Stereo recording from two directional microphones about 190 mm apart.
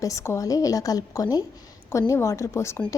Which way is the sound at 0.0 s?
15° left (ahead or behind).